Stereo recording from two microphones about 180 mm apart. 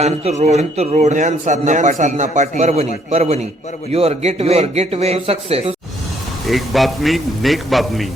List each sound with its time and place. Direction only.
0.0 s a man's voice: 40° right (ahead or behind)
6.5 s a man's voice: centre (ahead or behind)